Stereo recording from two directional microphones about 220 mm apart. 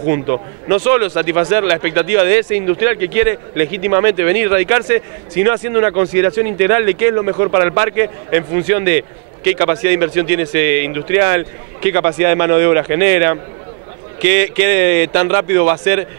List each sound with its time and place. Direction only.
0.1 s a man's voice: 15° right (ahead or behind)